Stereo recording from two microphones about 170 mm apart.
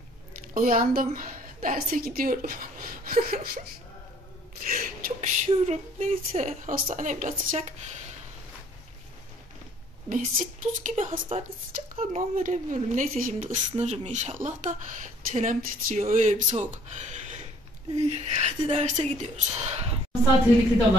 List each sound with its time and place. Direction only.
0.6 s a woman's voice: 55° right (ahead or behind)
4.6 s a woman's voice: 55° right (ahead or behind)
5.5 s a woman's voice: 40° right (ahead or behind)
10.0 s a woman's voice: 50° right (ahead or behind)